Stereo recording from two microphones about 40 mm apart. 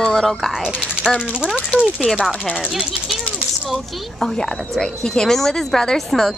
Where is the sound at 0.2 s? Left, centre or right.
Centre.